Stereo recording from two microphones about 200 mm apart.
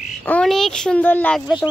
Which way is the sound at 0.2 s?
5° left (ahead or behind).